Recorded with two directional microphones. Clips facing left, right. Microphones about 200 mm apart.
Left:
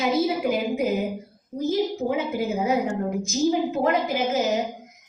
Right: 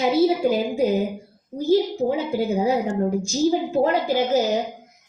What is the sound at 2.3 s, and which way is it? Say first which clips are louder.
A woman's voice: right 3 dB; 35° right (ahead or behind).